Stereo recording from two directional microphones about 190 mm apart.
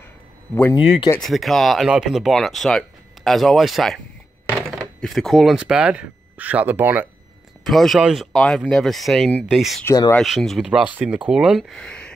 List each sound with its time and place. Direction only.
0.7 s speech: 25° left (ahead or behind)
1.2 s speech: centre (ahead or behind)
7.6 s speech: centre (ahead or behind)
9.8 s speech: 15° left (ahead or behind)
10.1 s speech: centre (ahead or behind)